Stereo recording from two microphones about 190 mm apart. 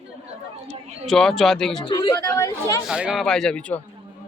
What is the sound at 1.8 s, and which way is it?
Speech, 25° left (ahead or behind).